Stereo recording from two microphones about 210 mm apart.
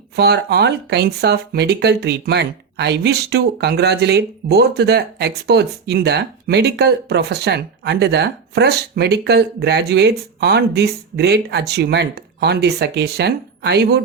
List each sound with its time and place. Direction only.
0.2 s speech: 50° right (ahead or behind)